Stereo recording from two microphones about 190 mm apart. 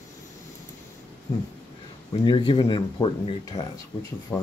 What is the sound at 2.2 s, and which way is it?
Speech, 25° left (ahead or behind).